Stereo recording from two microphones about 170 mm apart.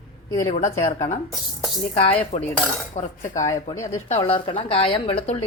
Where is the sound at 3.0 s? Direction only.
50° left (ahead or behind).